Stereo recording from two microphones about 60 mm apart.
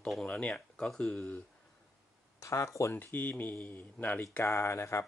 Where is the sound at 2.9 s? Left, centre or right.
Left.